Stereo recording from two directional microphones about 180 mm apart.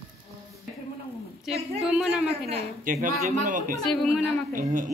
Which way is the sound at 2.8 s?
50° right (ahead or behind).